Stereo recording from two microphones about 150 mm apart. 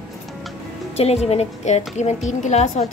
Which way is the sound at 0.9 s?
45° left (ahead or behind).